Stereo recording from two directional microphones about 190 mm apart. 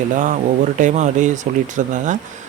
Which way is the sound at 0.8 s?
40° right (ahead or behind).